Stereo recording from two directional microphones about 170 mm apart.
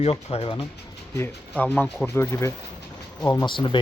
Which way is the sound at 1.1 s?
10° left (ahead or behind).